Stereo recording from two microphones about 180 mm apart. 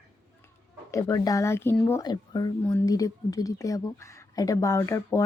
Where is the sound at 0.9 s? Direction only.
15° left (ahead or behind).